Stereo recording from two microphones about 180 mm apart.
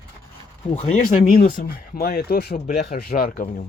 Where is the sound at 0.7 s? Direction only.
45° left (ahead or behind).